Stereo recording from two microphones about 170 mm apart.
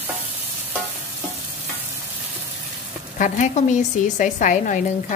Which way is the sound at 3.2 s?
45° left (ahead or behind).